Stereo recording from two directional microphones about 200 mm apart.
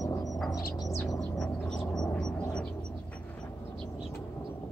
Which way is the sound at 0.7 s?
15° left (ahead or behind).